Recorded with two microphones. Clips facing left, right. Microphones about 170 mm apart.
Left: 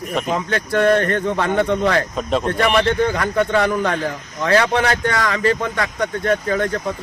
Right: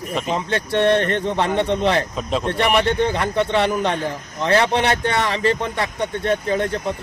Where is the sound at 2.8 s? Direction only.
30° right (ahead or behind).